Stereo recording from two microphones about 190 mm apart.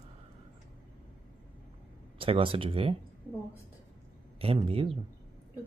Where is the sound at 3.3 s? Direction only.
10° left (ahead or behind).